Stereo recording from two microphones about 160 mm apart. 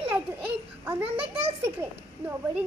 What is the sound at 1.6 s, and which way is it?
A child's voice, 10° right (ahead or behind).